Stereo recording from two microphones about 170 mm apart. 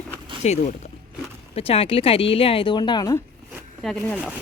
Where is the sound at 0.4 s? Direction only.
40° left (ahead or behind); by 3.2 s 25° left (ahead or behind).